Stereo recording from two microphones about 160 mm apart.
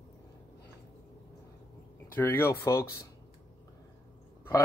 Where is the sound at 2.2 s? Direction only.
15° left (ahead or behind).